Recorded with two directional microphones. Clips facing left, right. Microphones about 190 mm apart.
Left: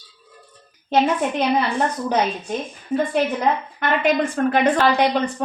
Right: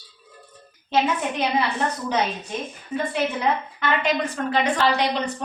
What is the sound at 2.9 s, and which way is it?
Speech, 55° left (ahead or behind).